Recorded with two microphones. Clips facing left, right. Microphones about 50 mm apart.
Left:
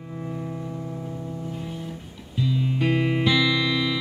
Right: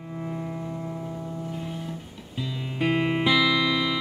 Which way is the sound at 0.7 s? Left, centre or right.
Right.